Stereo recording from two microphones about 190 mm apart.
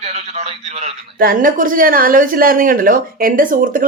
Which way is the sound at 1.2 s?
50° right (ahead or behind).